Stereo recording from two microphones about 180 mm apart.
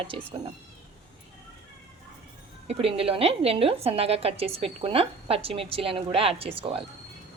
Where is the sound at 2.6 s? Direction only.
30° right (ahead or behind).